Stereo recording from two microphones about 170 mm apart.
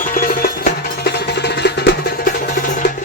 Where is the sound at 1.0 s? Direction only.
80° left.